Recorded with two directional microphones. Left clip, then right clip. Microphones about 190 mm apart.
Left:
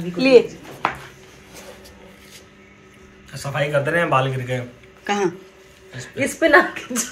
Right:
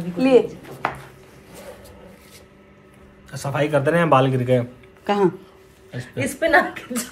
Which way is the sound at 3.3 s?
45° right (ahead or behind).